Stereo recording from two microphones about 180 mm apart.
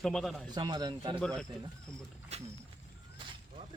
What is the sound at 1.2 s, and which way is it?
Speech, 5° left (ahead or behind).